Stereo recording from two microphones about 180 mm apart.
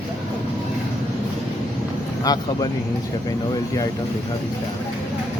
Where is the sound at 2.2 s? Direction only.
20° left (ahead or behind).